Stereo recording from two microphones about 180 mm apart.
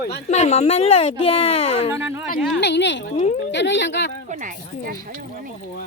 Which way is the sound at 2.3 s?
Centre (ahead or behind).